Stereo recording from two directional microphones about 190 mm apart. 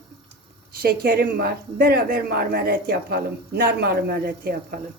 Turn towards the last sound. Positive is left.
turn(degrees=-55)  # may be behind; listen again after turning